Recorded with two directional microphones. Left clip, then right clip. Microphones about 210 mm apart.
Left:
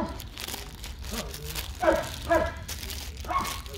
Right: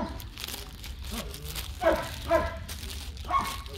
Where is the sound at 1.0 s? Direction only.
50° left (ahead or behind).